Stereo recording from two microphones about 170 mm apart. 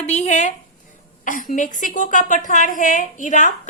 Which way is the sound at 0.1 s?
45° left (ahead or behind).